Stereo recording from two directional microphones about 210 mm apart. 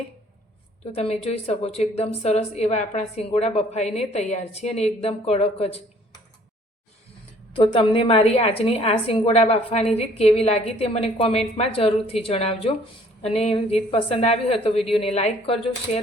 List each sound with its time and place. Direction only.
0.9 s a woman's voice: 30° left (ahead or behind)
7.5 s a woman's voice: 25° left (ahead or behind)